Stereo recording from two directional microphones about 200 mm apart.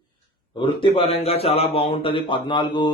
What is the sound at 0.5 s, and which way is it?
Speech, 25° left (ahead or behind).